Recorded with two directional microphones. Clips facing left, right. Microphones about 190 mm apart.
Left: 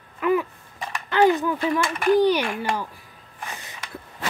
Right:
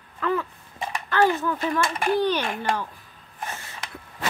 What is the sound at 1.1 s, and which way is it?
Speech, 15° left (ahead or behind).